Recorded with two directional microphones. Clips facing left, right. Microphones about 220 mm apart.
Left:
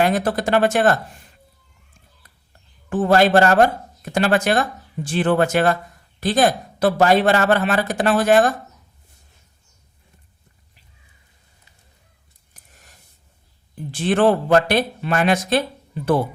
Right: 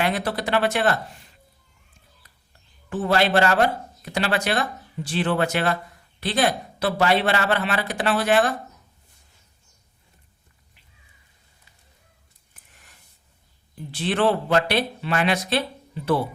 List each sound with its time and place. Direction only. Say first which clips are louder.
0.0 s speech: left 5 dB; 45° left (ahead or behind)
2.9 s speech: left 5 dB; 45° left (ahead or behind)
12.5 s a sound: left 4 dB; 40° left (ahead or behind)
13.9 s speech: left 5 dB; 45° left (ahead or behind)